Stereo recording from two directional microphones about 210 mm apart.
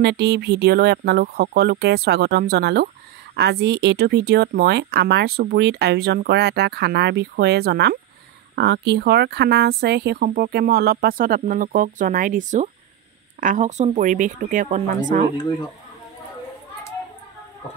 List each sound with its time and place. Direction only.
0.0 s speech: 50° right (ahead or behind)